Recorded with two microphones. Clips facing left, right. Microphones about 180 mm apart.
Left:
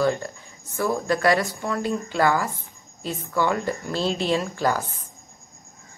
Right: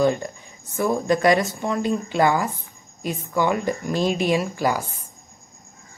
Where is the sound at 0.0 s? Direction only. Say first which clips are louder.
Right 2 dB; 20° right (ahead or behind).